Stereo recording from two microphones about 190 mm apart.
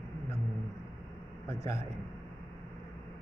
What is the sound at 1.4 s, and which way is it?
Speech, 15° left (ahead or behind).